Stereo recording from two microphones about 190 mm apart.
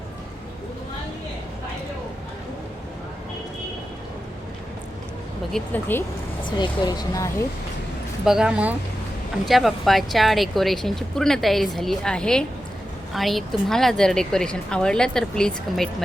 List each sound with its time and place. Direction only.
5.5 s speech: 5° left (ahead or behind)
6.6 s speech: 20° left (ahead or behind)
8.2 s speech: centre (ahead or behind)